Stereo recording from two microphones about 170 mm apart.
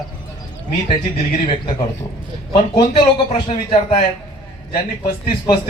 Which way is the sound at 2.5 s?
30° left (ahead or behind).